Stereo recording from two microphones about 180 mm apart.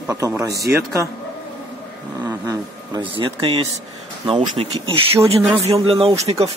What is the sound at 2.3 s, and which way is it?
A man's voice, 20° right (ahead or behind).